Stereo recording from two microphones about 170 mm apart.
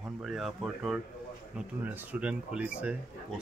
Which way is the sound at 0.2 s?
Centre (ahead or behind).